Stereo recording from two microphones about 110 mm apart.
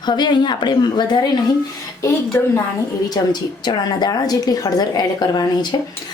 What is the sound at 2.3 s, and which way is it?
A woman's voice, 25° left (ahead or behind).